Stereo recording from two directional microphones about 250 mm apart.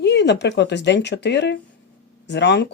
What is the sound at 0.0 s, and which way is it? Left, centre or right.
Speech, left.